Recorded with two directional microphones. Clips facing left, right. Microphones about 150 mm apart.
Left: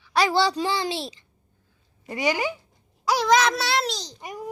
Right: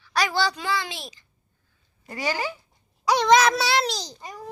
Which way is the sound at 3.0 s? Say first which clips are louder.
Right 2 dB; centre (ahead or behind).